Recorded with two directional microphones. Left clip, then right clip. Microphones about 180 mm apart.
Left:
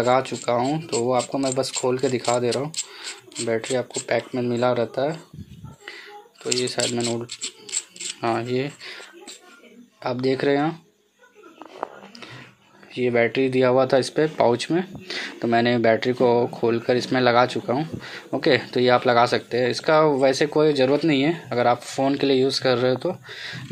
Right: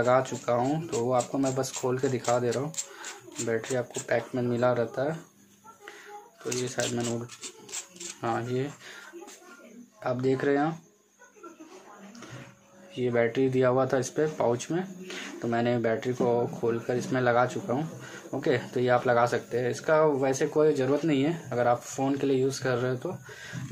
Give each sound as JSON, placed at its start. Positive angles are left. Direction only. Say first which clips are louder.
{"t": 0.0, "sound": "speech", "louder": "left 4 dB", "side_deg": 25}
{"t": 6.4, "sound": "speech", "louder": "left 7 dB", "side_deg": 30}
{"t": 8.2, "sound": "speech", "louder": "left 6 dB", "side_deg": 30}
{"t": 10.0, "sound": "speech", "louder": "left 5 dB", "side_deg": 30}
{"t": 12.9, "sound": "speech", "louder": "left 6 dB", "side_deg": 25}